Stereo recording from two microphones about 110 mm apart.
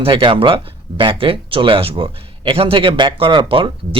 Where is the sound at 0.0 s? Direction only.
50° right (ahead or behind).